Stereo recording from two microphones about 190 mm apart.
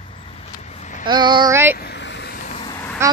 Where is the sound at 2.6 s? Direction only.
20° left (ahead or behind).